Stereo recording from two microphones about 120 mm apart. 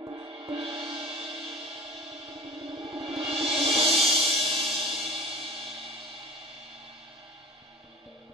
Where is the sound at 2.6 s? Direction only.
50° right (ahead or behind).